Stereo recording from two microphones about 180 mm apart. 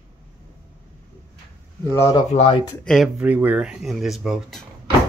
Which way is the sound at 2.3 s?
35° left (ahead or behind).